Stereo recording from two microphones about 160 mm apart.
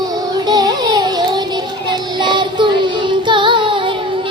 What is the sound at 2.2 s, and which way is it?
Child singing, 30° right (ahead or behind).